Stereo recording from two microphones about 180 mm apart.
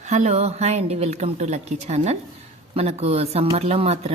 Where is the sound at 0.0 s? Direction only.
40° right (ahead or behind).